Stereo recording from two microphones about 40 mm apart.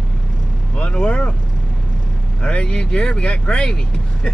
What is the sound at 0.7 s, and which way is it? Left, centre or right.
Vehicle, left.